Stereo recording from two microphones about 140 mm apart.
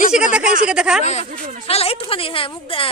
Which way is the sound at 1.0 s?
55° left (ahead or behind).